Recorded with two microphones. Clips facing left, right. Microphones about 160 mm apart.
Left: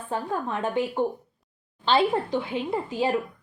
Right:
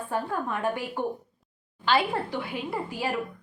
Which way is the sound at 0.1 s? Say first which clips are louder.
Left 2 dB; 20° left (ahead or behind).